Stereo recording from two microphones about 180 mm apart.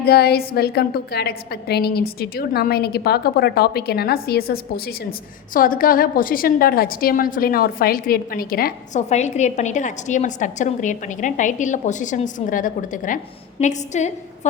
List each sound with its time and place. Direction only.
0.0 s a woman's voice: 60° left (ahead or behind)
9.0 s a woman's voice: 40° left (ahead or behind)